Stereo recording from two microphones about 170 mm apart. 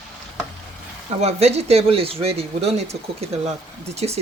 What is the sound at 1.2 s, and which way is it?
Speech, 40° right (ahead or behind).